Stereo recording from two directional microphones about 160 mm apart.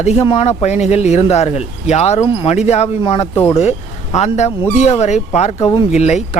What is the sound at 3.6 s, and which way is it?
Speech, 45° left (ahead or behind).